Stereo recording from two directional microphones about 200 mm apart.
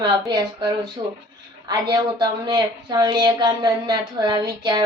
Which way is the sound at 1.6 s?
20° right (ahead or behind).